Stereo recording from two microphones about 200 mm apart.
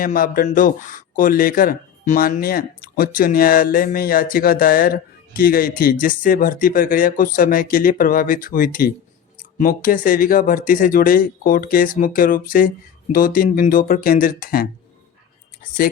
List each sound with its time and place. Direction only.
0.0 s speech: 45° left (ahead or behind)